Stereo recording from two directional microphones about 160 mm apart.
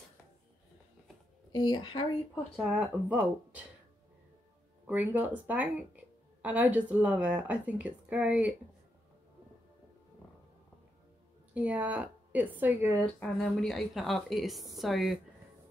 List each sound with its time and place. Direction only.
1.5 s a woman's voice: 25° left (ahead or behind)
2.5 s speech: centre (ahead or behind)
4.8 s speech: 10° right (ahead or behind)
11.5 s speech: 10° right (ahead or behind)
13.2 s speech: 5° left (ahead or behind)